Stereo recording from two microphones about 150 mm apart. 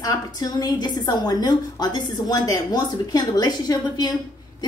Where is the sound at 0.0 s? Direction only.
25° left (ahead or behind).